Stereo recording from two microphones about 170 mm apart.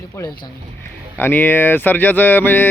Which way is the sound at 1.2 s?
10° left (ahead or behind).